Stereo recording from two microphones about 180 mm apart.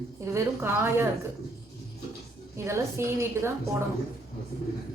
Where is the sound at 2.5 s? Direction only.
15° right (ahead or behind).